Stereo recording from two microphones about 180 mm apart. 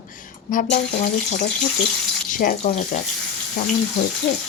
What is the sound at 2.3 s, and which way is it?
Speech, 45° left (ahead or behind).